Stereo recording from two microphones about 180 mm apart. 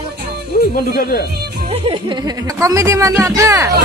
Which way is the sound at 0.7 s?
60° left (ahead or behind).